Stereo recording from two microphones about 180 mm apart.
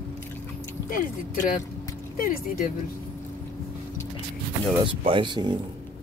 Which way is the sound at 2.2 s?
55° left (ahead or behind).